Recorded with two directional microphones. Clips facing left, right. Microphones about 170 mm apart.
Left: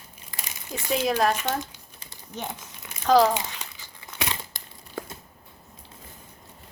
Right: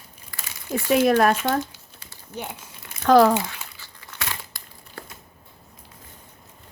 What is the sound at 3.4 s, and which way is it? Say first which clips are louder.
Crumpling: right 4 dB; 20° left (ahead or behind).